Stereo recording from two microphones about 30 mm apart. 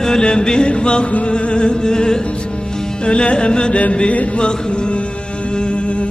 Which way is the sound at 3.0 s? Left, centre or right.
Left.